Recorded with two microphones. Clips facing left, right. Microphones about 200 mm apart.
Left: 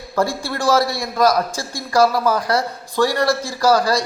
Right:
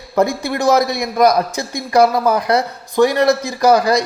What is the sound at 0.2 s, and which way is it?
A man's voice, 20° right (ahead or behind).